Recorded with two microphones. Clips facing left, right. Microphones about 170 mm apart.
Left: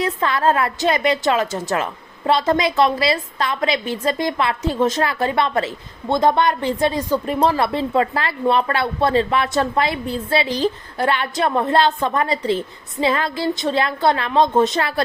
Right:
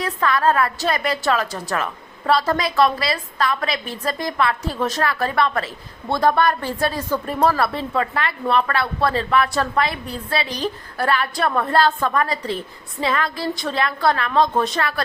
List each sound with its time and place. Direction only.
0.0 s a woman's voice: 25° left (ahead or behind)